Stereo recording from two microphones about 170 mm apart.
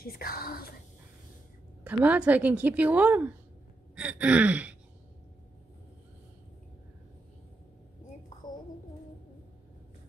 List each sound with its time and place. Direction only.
0.0 s a woman's voice: 60° left (ahead or behind)
1.9 s a woman's voice: 10° right (ahead or behind)
3.9 s gasp: 10° right (ahead or behind)